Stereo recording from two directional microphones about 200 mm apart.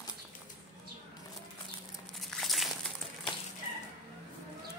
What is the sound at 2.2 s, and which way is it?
Crumpling, centre (ahead or behind).